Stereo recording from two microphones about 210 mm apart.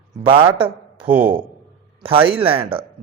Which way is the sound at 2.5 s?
25° right (ahead or behind).